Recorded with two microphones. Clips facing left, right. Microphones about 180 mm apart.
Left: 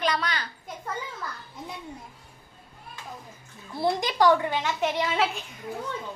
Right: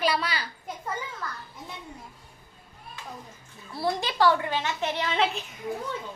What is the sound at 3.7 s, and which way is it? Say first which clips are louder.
A child's voice: left 2 dB; 20° left (ahead or behind).